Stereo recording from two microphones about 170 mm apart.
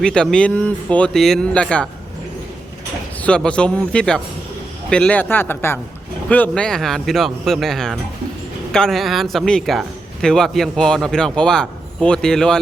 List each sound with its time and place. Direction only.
0.0 s speech: 5° left (ahead or behind)
3.2 s a man's voice: 5° left (ahead or behind)